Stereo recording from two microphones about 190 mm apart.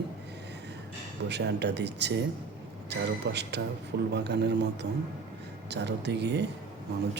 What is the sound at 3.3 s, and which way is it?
A man's voice, 65° right (ahead or behind).